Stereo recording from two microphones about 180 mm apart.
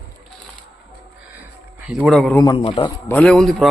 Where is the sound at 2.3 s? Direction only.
20° left (ahead or behind).